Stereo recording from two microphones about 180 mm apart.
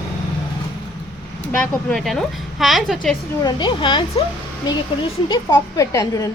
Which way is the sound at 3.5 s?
25° left (ahead or behind).